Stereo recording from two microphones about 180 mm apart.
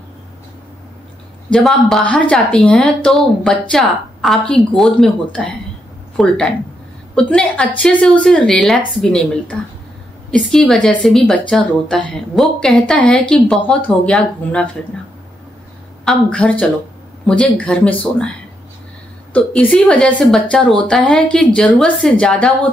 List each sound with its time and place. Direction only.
1.5 s speech: centre (ahead or behind)
16.1 s speech: 5° left (ahead or behind)
19.3 s speech: 10° left (ahead or behind)